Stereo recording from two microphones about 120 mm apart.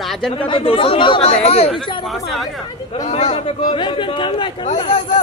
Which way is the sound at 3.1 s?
70° left (ahead or behind).